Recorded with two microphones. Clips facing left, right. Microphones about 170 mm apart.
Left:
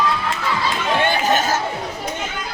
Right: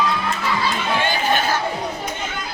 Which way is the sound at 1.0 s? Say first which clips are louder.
Left 4 dB; 45° left (ahead or behind).